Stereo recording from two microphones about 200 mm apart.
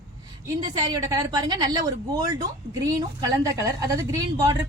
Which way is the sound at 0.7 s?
20° right (ahead or behind).